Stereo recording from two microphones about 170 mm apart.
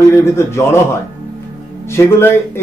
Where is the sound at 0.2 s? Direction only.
15° left (ahead or behind).